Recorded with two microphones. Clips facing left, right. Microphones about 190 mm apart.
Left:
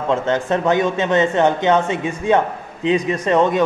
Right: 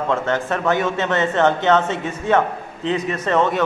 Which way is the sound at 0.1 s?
20° left (ahead or behind).